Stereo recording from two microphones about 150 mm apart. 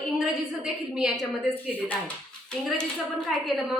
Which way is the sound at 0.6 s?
5° right (ahead or behind).